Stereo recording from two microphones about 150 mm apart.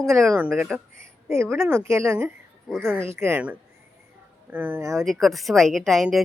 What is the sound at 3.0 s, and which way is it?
Speech, 15° right (ahead or behind).